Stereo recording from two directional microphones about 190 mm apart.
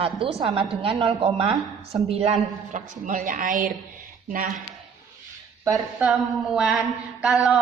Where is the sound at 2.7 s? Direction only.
45° right (ahead or behind).